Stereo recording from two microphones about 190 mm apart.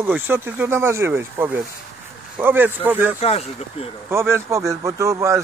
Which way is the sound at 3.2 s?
35° left (ahead or behind).